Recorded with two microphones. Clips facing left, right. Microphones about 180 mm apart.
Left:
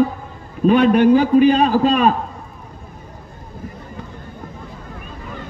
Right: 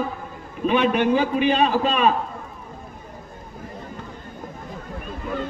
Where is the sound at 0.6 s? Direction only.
45° left (ahead or behind).